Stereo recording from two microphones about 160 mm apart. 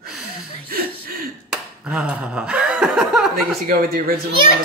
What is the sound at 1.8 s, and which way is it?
Speech, 5° right (ahead or behind).